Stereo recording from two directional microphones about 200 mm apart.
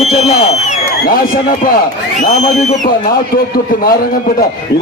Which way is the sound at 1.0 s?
45° left (ahead or behind).